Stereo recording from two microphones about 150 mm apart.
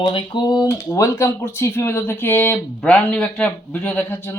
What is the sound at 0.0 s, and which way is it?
Speech, 30° left (ahead or behind).